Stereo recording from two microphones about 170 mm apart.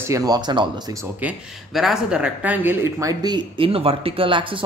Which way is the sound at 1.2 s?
5° right (ahead or behind).